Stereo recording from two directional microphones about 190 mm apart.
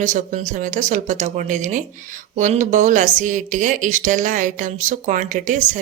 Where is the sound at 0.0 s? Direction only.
40° right (ahead or behind).